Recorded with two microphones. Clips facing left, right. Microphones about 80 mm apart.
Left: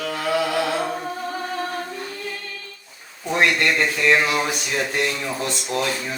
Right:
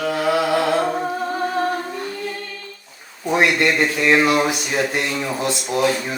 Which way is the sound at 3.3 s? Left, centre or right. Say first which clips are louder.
Right 2 dB; centre.